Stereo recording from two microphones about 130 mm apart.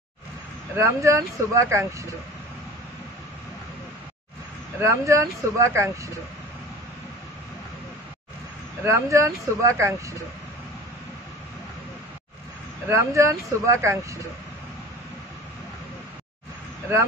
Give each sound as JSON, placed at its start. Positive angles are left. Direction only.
{"t": 0.7, "sound": "speech", "side_deg": -20}
{"t": 4.7, "sound": "speech", "side_deg": -20}
{"t": 8.8, "sound": "speech", "side_deg": -20}
{"t": 12.8, "sound": "speech", "side_deg": -20}